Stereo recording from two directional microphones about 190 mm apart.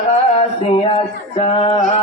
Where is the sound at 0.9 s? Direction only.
30° left (ahead or behind).